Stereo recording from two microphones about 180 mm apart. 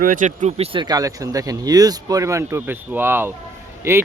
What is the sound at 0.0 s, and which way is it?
Speech, 50° right (ahead or behind).